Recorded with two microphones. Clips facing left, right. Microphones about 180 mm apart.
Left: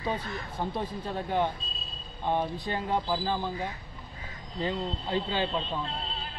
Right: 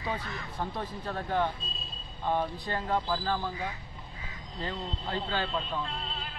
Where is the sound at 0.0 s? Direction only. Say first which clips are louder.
Left 3 dB; 15° left (ahead or behind).